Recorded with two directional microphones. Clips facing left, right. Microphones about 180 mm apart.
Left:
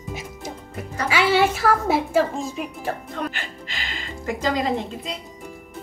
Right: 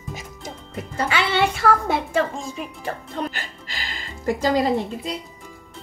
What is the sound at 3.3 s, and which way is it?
Music, 35° right (ahead or behind).